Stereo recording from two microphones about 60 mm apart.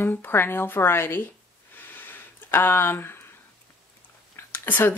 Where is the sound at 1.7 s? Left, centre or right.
Left.